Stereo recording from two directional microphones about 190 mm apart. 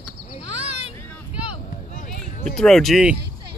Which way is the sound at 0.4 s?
30° left (ahead or behind).